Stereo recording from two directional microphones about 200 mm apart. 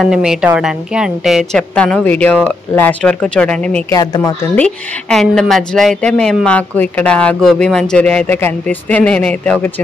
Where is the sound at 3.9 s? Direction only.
20° left (ahead or behind).